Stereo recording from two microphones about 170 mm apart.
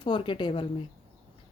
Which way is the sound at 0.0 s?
30° left (ahead or behind).